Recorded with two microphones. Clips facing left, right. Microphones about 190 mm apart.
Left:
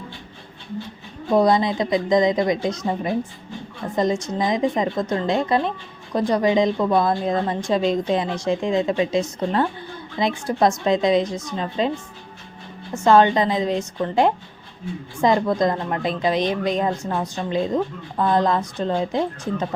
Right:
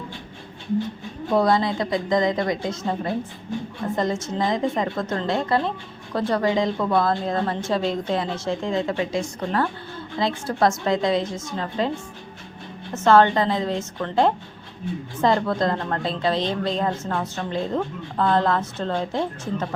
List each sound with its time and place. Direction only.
1.3 s a woman's voice: 20° left (ahead or behind)
12.9 s a woman's voice: 15° left (ahead or behind)